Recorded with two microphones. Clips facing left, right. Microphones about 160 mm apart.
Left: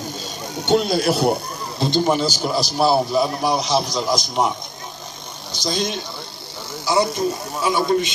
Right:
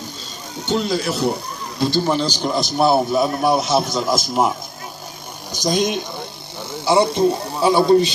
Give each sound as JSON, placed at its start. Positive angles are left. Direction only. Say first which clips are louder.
{"t": 0.7, "sound": "speech", "louder": "left 3 dB", "side_deg": 70}
{"t": 1.8, "sound": "a man's voice", "louder": "even", "side_deg": 15}
{"t": 5.5, "sound": "speech", "louder": "right 5 dB", "side_deg": -15}
{"t": 6.8, "sound": "a man's voice", "louder": "right 4 dB", "side_deg": -25}